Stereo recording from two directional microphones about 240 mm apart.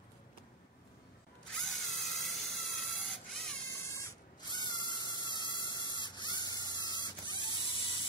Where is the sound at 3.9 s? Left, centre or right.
Centre.